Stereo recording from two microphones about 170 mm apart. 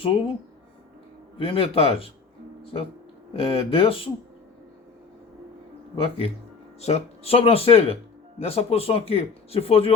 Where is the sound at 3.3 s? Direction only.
30° left (ahead or behind).